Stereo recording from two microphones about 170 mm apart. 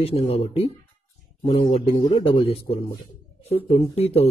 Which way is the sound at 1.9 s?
25° left (ahead or behind).